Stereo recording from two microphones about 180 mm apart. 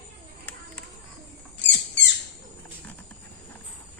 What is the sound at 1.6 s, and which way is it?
Rodents, 75° left (ahead or behind).